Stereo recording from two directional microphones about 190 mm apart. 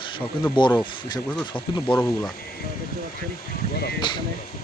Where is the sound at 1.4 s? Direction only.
25° left (ahead or behind).